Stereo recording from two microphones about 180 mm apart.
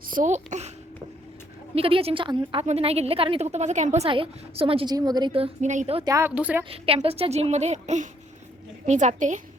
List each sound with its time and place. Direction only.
0.1 s a woman's voice: 45° right (ahead or behind)
1.7 s a woman's voice: 30° right (ahead or behind)
6.1 s speech: 15° right (ahead or behind)
6.7 s a woman's voice: 30° right (ahead or behind)